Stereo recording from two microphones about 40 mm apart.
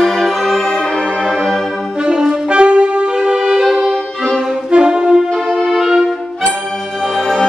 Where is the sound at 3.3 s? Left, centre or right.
Centre.